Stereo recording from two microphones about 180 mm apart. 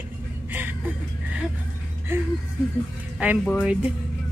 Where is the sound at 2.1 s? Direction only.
15° right (ahead or behind).